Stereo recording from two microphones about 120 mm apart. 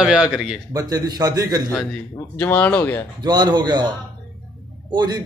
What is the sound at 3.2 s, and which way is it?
A man's voice, 35° right (ahead or behind).